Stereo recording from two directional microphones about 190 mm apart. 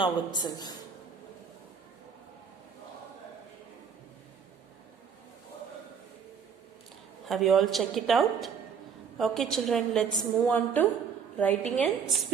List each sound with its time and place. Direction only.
0.0 s a woman's voice: 25° left (ahead or behind)
7.3 s a woman's voice: centre (ahead or behind)